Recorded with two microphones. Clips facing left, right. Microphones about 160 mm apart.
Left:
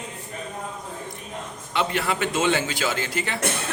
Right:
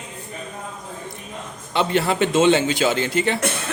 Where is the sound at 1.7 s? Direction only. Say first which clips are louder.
Right 5 dB; 30° right (ahead or behind).